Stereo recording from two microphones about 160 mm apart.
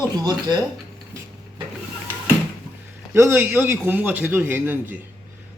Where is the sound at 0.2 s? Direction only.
25° right (ahead or behind).